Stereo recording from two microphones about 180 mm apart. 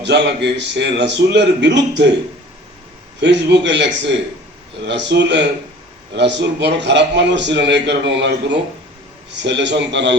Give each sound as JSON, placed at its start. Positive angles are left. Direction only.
{"t": 0.0, "sound": "a man's voice", "side_deg": -75}
{"t": 3.2, "sound": "a man's voice", "side_deg": -75}